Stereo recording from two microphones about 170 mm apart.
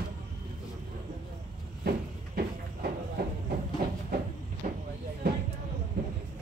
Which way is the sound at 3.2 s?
65° right (ahead or behind).